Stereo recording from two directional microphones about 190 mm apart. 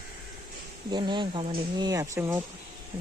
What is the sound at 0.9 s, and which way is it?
Speech, 25° right (ahead or behind).